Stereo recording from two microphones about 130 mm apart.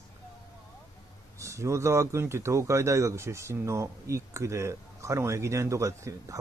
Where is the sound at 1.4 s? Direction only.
25° right (ahead or behind).